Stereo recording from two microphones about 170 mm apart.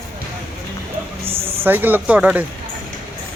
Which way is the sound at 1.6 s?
10° right (ahead or behind).